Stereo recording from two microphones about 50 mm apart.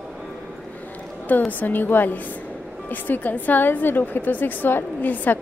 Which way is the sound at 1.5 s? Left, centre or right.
Left.